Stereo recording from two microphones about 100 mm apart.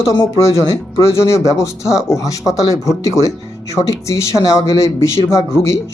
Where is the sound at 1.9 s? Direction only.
5° right (ahead or behind).